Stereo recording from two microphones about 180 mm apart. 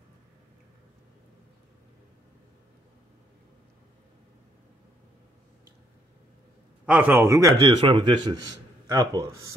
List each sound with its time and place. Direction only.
6.9 s a man's voice: 10° right (ahead or behind)